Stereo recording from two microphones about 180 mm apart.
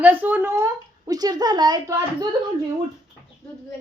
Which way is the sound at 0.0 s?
10° right (ahead or behind).